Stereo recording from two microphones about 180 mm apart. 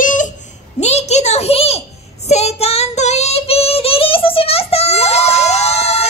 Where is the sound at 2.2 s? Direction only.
35° left (ahead or behind).